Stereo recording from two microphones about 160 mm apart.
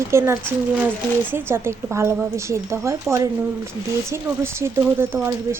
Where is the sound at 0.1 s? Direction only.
15° right (ahead or behind).